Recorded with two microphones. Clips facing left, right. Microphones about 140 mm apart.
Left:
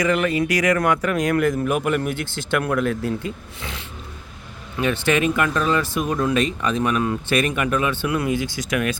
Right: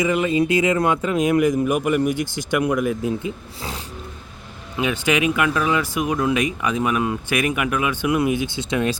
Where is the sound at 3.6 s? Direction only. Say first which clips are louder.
Right 3 dB; 35° right (ahead or behind).